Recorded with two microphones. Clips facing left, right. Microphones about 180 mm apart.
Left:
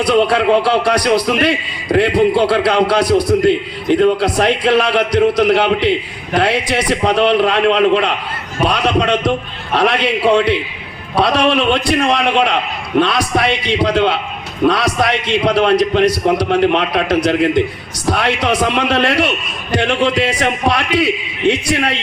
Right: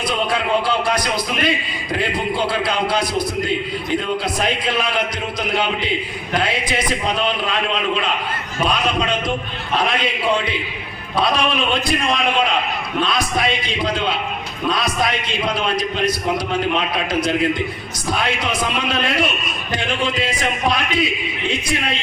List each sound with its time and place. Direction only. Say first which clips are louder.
0.0 s speech: left 9 dB; 70° left (ahead or behind)